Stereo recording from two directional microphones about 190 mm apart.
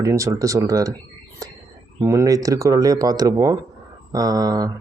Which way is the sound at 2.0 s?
15° right (ahead or behind).